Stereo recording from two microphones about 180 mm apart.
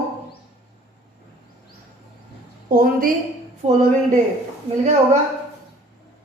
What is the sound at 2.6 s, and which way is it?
Speech, 50° right (ahead or behind).